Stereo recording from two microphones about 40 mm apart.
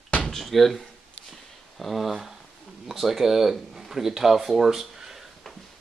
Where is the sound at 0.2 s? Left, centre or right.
Centre.